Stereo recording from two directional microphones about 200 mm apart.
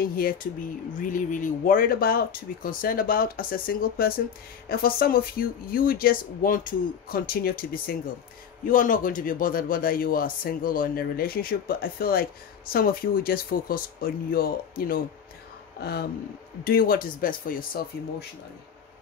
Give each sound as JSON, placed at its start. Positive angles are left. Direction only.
{"t": 0.0, "sound": "speech", "side_deg": 45}